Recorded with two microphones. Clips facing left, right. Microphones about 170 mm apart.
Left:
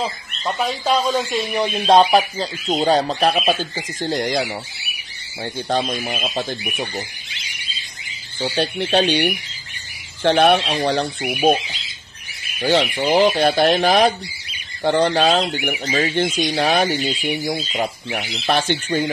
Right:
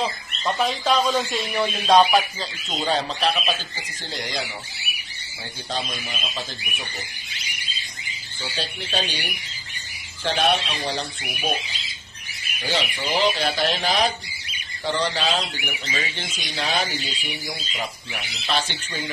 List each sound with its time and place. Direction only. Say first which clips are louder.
0.0 s speech: left 1 dB; 5° left (ahead or behind); by 6.4 s 60° left (ahead or behind)
8.4 s speech: left 11 dB; 65° left (ahead or behind)
12.5 s speech: left 9 dB; 60° left (ahead or behind)